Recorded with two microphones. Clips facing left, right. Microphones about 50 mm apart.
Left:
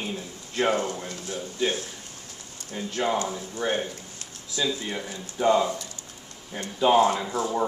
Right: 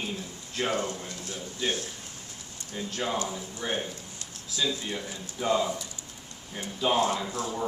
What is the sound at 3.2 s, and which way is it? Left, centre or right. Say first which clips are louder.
Speech: left 5 dB; centre.